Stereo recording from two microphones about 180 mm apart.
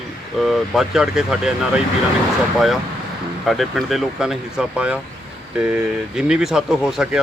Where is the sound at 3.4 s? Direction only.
Centre (ahead or behind).